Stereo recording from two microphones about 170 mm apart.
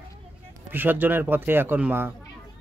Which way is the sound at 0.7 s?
10° right (ahead or behind).